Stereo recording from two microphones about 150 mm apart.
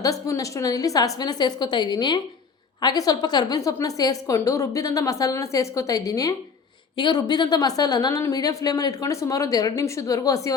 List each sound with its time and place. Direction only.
0.0 s a woman's voice: 25° left (ahead or behind)